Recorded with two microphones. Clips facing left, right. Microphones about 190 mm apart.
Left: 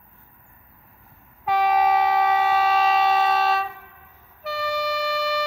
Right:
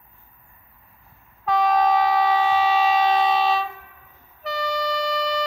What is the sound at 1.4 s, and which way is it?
Train, 5° left (ahead or behind).